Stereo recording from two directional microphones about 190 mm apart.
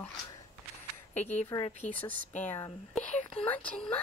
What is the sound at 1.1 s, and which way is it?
Speech, 35° left (ahead or behind).